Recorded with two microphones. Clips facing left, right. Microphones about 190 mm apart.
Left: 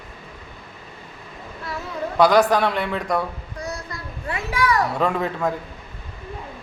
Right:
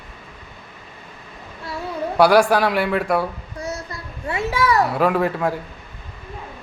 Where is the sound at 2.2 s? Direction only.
10° right (ahead or behind).